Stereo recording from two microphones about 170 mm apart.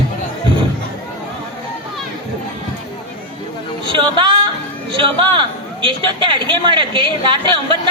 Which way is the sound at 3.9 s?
30° right (ahead or behind).